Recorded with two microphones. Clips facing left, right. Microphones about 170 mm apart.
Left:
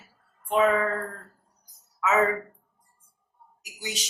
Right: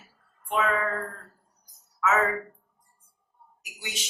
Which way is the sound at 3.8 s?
35° left (ahead or behind).